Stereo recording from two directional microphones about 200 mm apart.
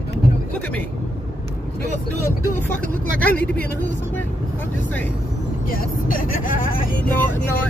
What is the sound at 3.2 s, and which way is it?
Speech, 5° left (ahead or behind).